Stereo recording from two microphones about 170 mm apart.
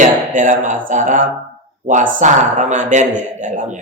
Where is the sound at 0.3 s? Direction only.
50° right (ahead or behind).